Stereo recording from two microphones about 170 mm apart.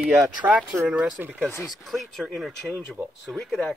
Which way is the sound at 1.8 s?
Centre (ahead or behind).